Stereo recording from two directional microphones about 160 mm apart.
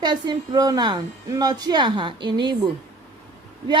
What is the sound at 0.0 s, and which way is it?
A woman's voice, 25° right (ahead or behind).